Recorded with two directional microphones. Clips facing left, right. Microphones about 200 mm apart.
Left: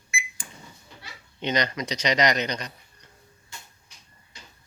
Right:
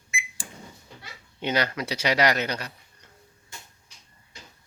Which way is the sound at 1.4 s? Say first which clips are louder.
Even; 10° right (ahead or behind).